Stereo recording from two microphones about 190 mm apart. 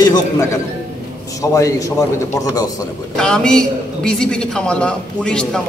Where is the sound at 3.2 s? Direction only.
5° left (ahead or behind).